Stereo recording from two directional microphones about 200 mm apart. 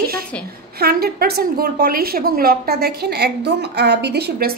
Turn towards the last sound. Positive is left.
turn(degrees=-50)  # may be behind; listen again after turning